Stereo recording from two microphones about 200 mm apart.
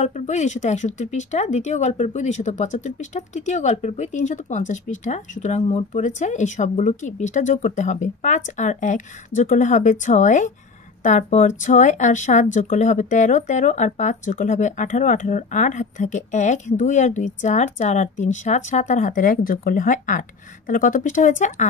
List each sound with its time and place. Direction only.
0.0 s speech: 35° left (ahead or behind)